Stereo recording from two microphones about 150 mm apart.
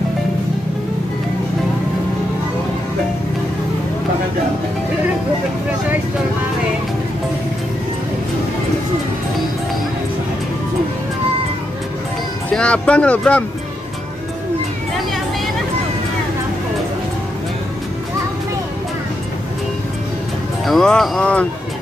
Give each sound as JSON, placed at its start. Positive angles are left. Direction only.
{"t": 12.4, "sound": "speech", "side_deg": 5}
{"t": 20.6, "sound": "speech", "side_deg": 5}